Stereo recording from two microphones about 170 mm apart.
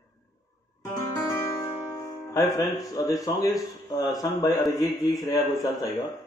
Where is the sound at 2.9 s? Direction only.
20° left (ahead or behind).